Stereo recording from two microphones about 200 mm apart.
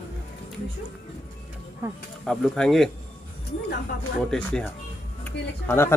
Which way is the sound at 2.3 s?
5° left (ahead or behind).